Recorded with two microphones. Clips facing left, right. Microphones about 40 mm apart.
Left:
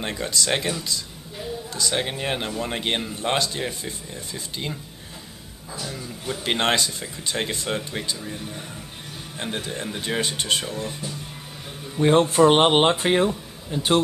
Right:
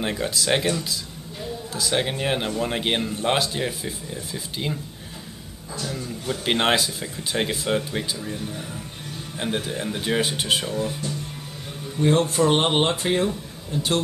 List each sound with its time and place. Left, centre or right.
0.0 s a man's voice: centre
5.8 s a man's voice: centre
12.0 s speech: centre
13.3 s speech: centre